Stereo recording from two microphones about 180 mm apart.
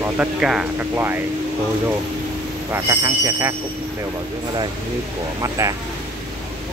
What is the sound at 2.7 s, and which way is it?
Speech, 20° right (ahead or behind).